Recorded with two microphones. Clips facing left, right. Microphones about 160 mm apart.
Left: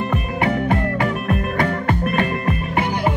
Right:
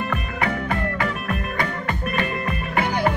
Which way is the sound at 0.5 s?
30° left (ahead or behind).